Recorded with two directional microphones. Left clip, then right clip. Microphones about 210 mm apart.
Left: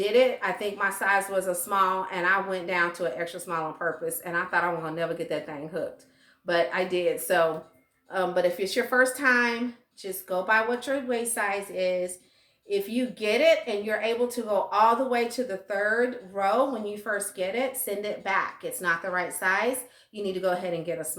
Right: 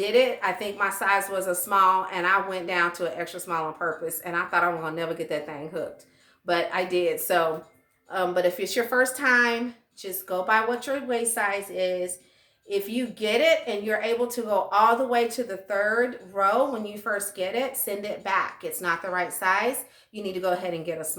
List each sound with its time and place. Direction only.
0.0 s a woman's voice: 15° right (ahead or behind)